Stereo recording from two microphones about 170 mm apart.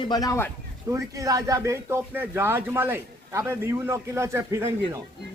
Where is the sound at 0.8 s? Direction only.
20° right (ahead or behind).